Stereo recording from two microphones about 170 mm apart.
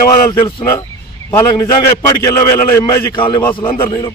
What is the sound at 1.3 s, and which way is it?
A man's voice, 20° left (ahead or behind).